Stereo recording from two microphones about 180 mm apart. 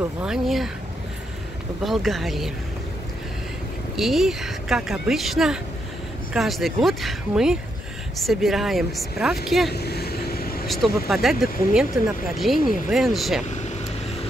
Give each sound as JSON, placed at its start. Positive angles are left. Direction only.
{"t": 0.0, "sound": "speech", "side_deg": -5}
{"t": 1.8, "sound": "speech", "side_deg": 0}
{"t": 3.9, "sound": "speech", "side_deg": 0}
{"t": 9.7, "sound": "vehicle", "side_deg": 65}
{"t": 10.7, "sound": "speech", "side_deg": 0}